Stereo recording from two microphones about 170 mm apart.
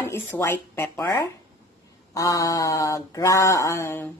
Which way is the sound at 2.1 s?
20° left (ahead or behind).